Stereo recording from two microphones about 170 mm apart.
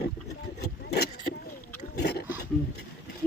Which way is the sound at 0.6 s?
70° left (ahead or behind).